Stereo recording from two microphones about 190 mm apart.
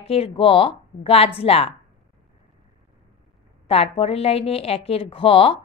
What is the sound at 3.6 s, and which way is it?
A woman's voice, 30° left (ahead or behind).